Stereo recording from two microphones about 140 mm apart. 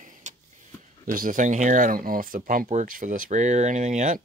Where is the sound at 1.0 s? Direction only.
80° right.